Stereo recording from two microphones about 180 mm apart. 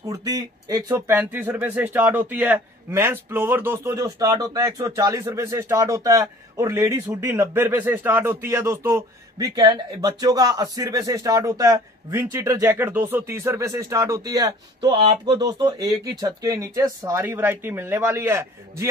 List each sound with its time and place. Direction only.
0.0 s speech: 20° right (ahead or behind)